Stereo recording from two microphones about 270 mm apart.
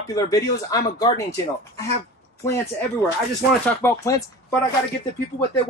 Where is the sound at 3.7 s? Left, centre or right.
Centre.